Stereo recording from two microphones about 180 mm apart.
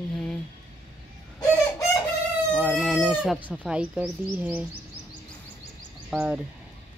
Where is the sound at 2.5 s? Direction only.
5° left (ahead or behind).